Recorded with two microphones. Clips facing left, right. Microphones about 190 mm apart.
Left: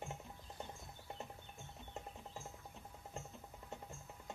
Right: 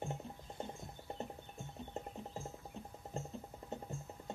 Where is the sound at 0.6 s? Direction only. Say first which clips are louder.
Right 5 dB; 25° right (ahead or behind).